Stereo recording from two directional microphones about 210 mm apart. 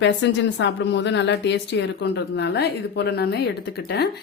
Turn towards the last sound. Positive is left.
turn(degrees=50)  # may be behind; listen again after turning